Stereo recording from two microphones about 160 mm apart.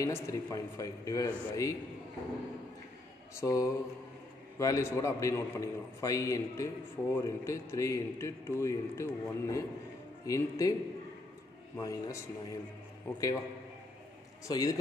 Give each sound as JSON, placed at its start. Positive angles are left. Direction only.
{"t": 0.0, "sound": "a man's voice", "side_deg": 20}
{"t": 3.3, "sound": "a man's voice", "side_deg": 20}
{"t": 11.8, "sound": "a man's voice", "side_deg": 20}
{"t": 14.5, "sound": "a man's voice", "side_deg": 20}